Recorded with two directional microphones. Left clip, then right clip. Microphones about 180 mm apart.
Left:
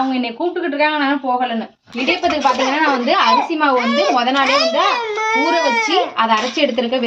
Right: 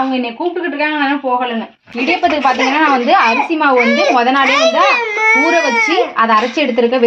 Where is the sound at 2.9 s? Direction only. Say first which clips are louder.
Right 3 dB; 35° right (ahead or behind).